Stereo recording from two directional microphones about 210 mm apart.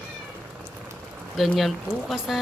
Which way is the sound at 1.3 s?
Centre (ahead or behind).